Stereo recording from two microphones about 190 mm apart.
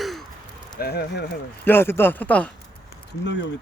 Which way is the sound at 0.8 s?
55° left (ahead or behind).